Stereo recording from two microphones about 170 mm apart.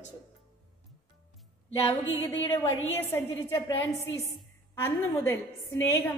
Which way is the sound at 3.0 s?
15° left (ahead or behind).